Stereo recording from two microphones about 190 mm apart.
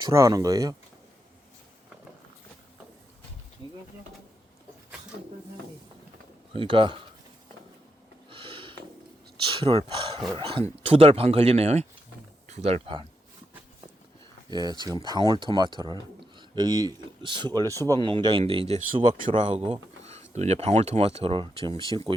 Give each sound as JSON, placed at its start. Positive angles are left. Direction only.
{"t": 0.0, "sound": "speech", "side_deg": -15}
{"t": 6.5, "sound": "speech", "side_deg": -25}
{"t": 8.3, "sound": "a sound", "side_deg": -30}
{"t": 9.4, "sound": "speech", "side_deg": -25}
{"t": 14.5, "sound": "speech", "side_deg": -20}